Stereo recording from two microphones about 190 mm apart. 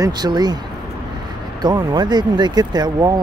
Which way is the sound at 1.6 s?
20° right (ahead or behind).